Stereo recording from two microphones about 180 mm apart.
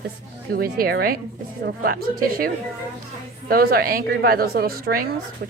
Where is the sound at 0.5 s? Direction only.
55° right (ahead or behind).